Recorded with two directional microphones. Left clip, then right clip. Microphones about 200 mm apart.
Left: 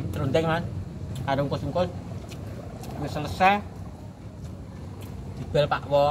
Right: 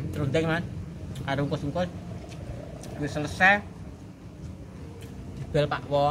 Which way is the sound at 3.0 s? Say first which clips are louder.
Even; 15° right (ahead or behind).